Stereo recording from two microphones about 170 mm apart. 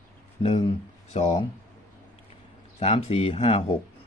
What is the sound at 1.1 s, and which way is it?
Speech, 30° left (ahead or behind).